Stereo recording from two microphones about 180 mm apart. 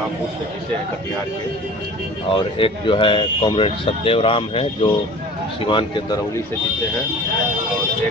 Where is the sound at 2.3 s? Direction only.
30° left (ahead or behind).